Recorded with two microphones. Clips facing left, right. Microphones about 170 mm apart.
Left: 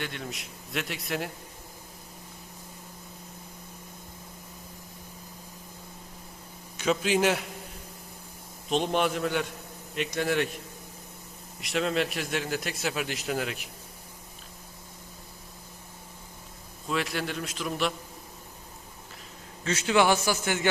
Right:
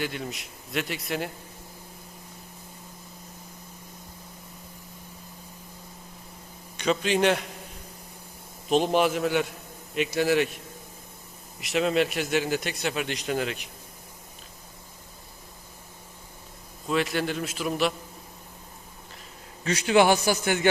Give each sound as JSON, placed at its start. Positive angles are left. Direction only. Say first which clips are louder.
{"t": 0.0, "sound": "a man's voice", "louder": "right 4 dB", "side_deg": -5}
{"t": 6.7, "sound": "a man's voice", "louder": "right 1 dB", "side_deg": 5}
{"t": 8.7, "sound": "a man's voice", "louder": "right 4 dB", "side_deg": -5}
{"t": 11.6, "sound": "a man's voice", "louder": "right 4 dB", "side_deg": -5}
{"t": 16.9, "sound": "a man's voice", "louder": "right 4 dB", "side_deg": 0}
{"t": 19.6, "sound": "a man's voice", "louder": "right 3 dB", "side_deg": -15}